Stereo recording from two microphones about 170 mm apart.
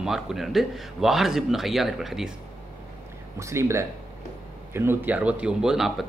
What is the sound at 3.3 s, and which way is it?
A man's voice, 15° right (ahead or behind).